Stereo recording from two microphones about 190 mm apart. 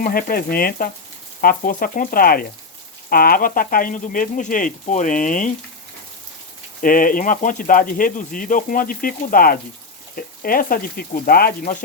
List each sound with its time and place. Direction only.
0.0 s speech: 50° left (ahead or behind)
6.8 s speech: 45° left (ahead or behind)